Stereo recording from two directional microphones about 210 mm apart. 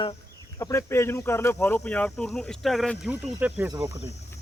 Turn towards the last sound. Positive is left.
turn(degrees=-15)  # may be behind; listen again after turning